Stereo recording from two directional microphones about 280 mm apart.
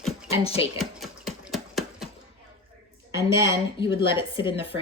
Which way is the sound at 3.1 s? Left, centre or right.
Centre.